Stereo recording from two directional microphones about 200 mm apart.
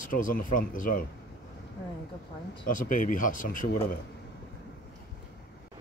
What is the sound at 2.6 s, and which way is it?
Speech, 45° left (ahead or behind).